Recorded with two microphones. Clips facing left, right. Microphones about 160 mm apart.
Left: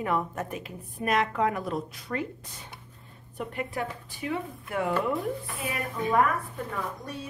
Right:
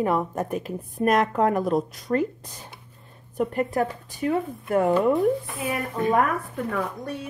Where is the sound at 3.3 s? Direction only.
40° right (ahead or behind).